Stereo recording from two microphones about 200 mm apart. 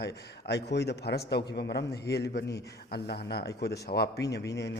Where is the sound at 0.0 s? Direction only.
55° left (ahead or behind).